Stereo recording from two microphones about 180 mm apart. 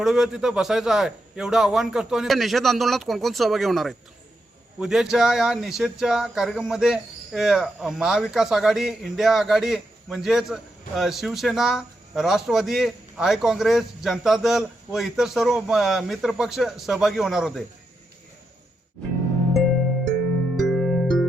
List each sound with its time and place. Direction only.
0.0 s speech: centre (ahead or behind)
20.6 s music: centre (ahead or behind)